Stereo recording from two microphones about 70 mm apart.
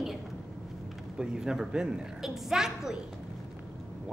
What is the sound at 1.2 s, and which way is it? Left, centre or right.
A woman's voice, centre.